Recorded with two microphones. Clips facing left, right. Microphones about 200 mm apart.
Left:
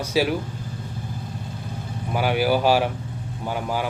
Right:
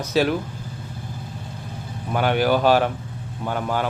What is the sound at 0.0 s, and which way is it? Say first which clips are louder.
Speech: right 2 dB; 10° left (ahead or behind).